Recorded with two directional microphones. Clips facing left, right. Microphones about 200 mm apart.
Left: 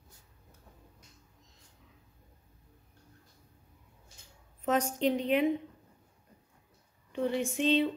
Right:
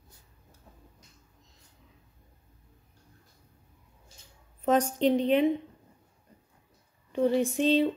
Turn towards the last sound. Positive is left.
turn(degrees=-40)  # may be behind; listen again after turning